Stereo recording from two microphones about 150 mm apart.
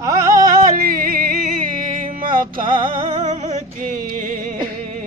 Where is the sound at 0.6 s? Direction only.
75° right (ahead or behind).